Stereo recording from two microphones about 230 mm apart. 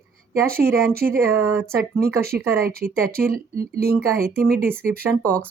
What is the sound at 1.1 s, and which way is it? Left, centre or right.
Speech, centre.